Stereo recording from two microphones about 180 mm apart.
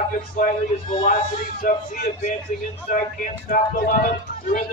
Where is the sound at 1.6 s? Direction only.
55° left (ahead or behind).